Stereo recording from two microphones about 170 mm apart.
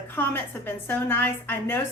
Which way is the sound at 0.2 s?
10° left (ahead or behind).